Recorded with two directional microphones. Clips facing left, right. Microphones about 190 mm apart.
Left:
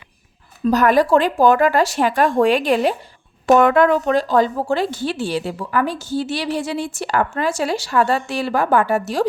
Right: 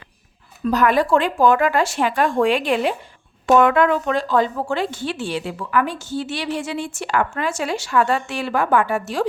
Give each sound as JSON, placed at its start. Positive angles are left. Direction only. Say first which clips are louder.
{"t": 0.6, "sound": "speech", "louder": "left 3 dB", "side_deg": 40}